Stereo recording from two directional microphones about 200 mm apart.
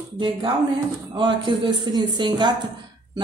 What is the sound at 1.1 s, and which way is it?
A woman's voice, 25° right (ahead or behind).